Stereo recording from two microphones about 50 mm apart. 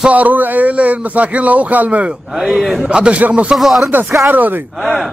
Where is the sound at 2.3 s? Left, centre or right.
Centre.